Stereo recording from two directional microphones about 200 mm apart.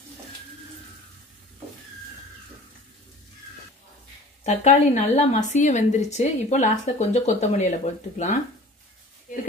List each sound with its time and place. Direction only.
4.5 s speech: 35° left (ahead or behind)